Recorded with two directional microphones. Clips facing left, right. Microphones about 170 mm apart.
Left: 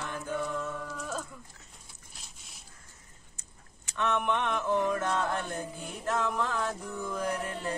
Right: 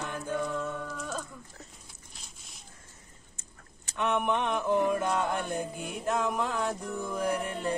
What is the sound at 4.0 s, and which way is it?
Mantra, 15° right (ahead or behind).